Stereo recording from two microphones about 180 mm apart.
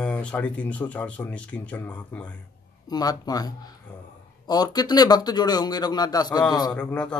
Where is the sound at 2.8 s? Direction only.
20° left (ahead or behind).